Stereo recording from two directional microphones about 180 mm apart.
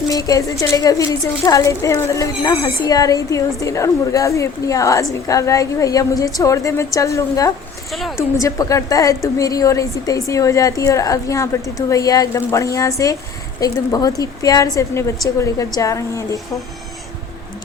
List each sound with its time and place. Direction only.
0.1 s a woman's voice: 20° left (ahead or behind)
7.9 s a woman's voice: centre (ahead or behind)
8.4 s a woman's voice: 20° left (ahead or behind)